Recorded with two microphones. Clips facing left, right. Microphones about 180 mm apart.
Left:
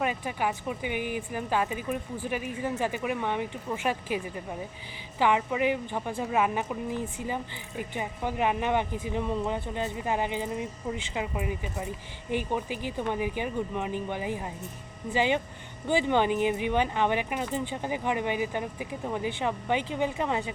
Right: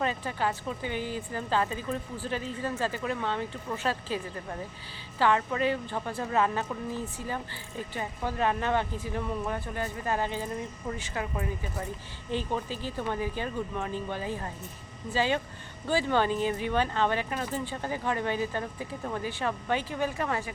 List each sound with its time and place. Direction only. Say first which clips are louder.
0.0 s speech: left 1 dB; 10° left (ahead or behind)